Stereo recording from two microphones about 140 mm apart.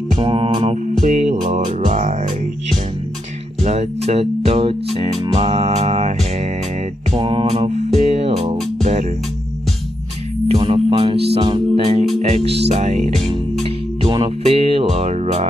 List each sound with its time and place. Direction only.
0.1 s speech: 40° right (ahead or behind)
1.0 s speech: 55° right (ahead or behind)
1.9 s music: 55° right (ahead or behind)
3.6 s speech: 50° right (ahead or behind)
7.1 s speech: 40° right (ahead or behind)
8.8 s music: 55° right (ahead or behind)
10.5 s speech: 40° right (ahead or behind)
14.0 s speech: 35° right (ahead or behind)